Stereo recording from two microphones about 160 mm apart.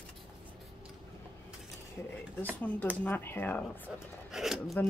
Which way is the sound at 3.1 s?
15° left (ahead or behind).